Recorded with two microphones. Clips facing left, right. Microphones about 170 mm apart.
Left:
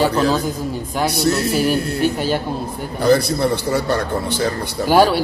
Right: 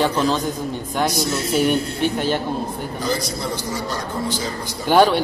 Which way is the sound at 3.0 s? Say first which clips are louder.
Left 11 dB; 60° left (ahead or behind).